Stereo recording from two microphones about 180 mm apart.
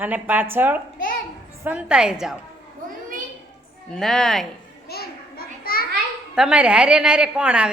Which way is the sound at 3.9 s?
Centre (ahead or behind).